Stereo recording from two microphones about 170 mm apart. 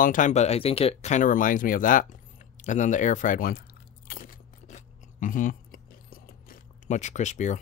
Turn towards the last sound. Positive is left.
turn(degrees=45)  # may be behind; listen again after turning